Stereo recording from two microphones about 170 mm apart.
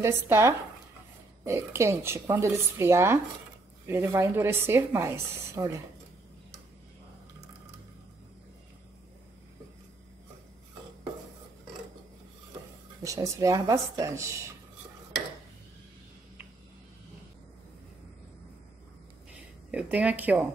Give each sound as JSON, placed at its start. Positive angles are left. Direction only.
{"t": 0.0, "sound": "a woman's voice", "side_deg": -15}
{"t": 13.0, "sound": "speech", "side_deg": -20}
{"t": 19.7, "sound": "a woman's voice", "side_deg": -10}